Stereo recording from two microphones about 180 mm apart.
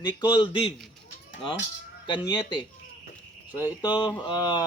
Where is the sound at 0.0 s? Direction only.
25° left (ahead or behind).